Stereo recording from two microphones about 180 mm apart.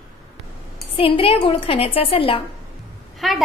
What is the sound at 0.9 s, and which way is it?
A woman's voice, 30° left (ahead or behind).